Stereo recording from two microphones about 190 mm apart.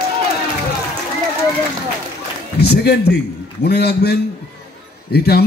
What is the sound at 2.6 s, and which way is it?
A man's voice, 60° left (ahead or behind).